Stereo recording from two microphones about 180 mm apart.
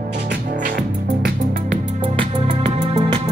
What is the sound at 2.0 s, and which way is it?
Music, 30° right (ahead or behind).